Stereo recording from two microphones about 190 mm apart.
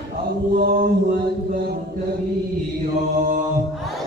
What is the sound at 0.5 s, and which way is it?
Mantra, 50° right (ahead or behind).